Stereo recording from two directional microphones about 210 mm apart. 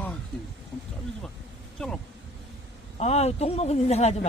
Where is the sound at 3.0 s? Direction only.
30° left (ahead or behind).